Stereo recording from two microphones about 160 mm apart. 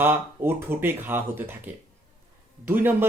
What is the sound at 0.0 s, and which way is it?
Speech, 10° right (ahead or behind).